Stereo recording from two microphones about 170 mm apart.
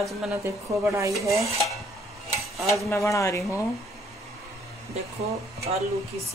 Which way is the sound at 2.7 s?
15° left (ahead or behind).